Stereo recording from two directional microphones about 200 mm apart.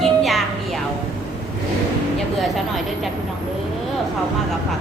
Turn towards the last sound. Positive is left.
turn(degrees=0)  # may be behind; listen again after turning